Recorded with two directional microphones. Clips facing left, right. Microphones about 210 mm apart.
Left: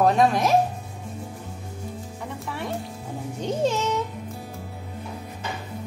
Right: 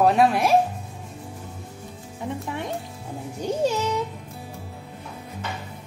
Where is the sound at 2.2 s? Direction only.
20° right (ahead or behind).